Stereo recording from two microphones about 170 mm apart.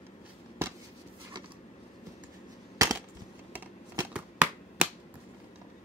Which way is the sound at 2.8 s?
20° right (ahead or behind).